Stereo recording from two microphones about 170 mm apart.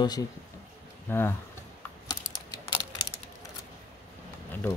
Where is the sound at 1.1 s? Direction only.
15° left (ahead or behind).